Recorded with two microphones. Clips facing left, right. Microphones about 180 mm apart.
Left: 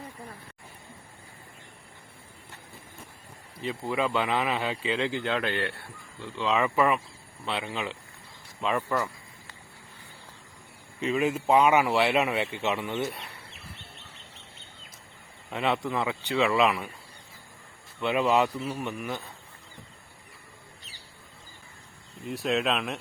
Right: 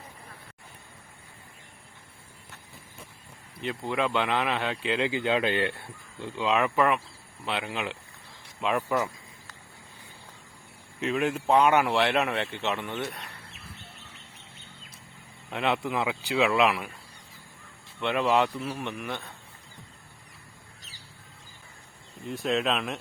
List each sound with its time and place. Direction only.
3.6 s speech: centre (ahead or behind)
5.1 s speech: 15° right (ahead or behind)
6.6 s speech: centre (ahead or behind)
11.0 s speech: centre (ahead or behind)
15.4 s speech: centre (ahead or behind)
18.0 s speech: 5° left (ahead or behind)
22.3 s speech: centre (ahead or behind)